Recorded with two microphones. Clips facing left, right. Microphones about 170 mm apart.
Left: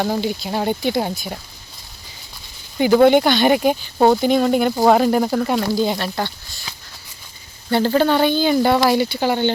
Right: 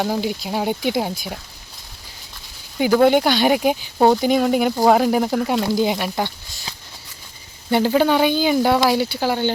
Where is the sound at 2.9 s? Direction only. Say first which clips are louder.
Left 2 dB; 5° right (ahead or behind).